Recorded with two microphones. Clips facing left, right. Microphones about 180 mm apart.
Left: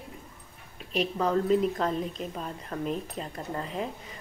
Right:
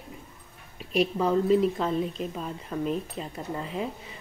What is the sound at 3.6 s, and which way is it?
Speech, 35° left (ahead or behind).